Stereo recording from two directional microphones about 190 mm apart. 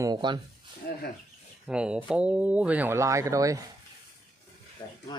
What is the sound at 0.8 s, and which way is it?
Speech, 55° left (ahead or behind).